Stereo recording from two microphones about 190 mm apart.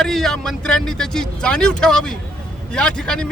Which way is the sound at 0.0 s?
Centre (ahead or behind).